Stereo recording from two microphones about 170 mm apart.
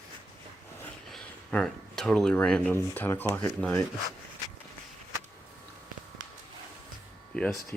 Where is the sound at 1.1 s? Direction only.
5° left (ahead or behind).